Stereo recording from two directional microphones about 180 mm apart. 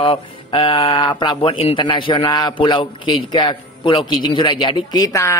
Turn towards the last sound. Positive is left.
turn(degrees=15)  # may be behind; listen again after turning